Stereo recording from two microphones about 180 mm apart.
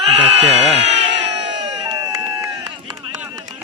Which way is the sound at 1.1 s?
75° right (ahead or behind).